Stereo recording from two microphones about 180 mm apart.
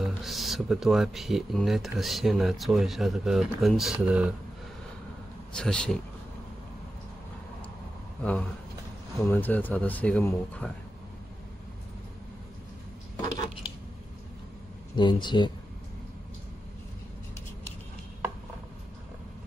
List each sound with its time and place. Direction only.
0.0 s speech: centre (ahead or behind)
5.5 s speech: 5° left (ahead or behind)
8.2 s speech: 5° left (ahead or behind)
15.0 s speech: 25° left (ahead or behind)